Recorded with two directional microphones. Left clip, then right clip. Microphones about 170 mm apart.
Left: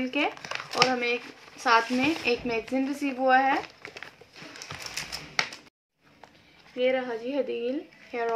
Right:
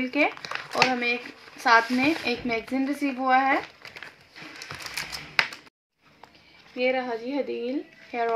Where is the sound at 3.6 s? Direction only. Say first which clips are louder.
Right 2 dB; centre (ahead or behind).